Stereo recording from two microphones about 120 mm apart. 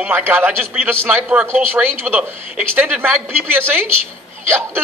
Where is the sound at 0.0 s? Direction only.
20° right (ahead or behind).